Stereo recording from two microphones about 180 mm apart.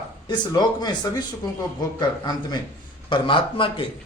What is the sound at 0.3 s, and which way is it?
A man's voice, 25° left (ahead or behind).